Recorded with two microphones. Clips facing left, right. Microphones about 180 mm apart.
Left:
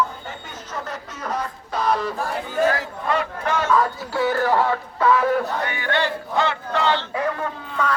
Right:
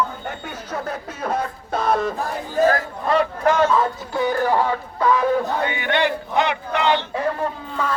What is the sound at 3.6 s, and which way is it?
Speech, 25° right (ahead or behind).